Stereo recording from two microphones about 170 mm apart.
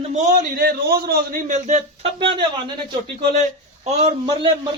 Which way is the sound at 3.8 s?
40° right (ahead or behind).